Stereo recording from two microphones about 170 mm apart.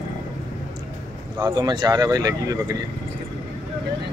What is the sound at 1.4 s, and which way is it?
Speech, 25° right (ahead or behind).